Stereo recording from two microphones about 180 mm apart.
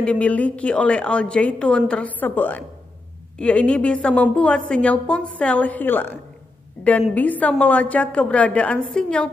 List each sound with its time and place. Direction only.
0.0 s a woman's voice: 5° left (ahead or behind)